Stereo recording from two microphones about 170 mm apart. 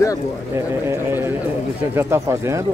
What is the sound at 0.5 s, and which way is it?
Speech, 15° right (ahead or behind).